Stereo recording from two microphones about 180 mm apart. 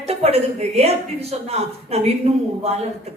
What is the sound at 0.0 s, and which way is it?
A woman's voice, 35° right (ahead or behind).